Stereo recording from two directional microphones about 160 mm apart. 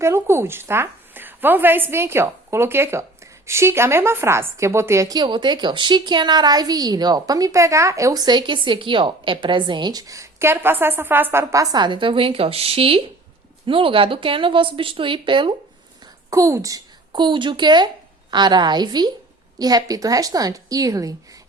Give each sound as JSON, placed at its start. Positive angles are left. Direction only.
{"t": 0.0, "sound": "a woman's voice", "side_deg": -15}
{"t": 16.3, "sound": "a woman's voice", "side_deg": -20}
{"t": 17.1, "sound": "a woman's voice", "side_deg": -30}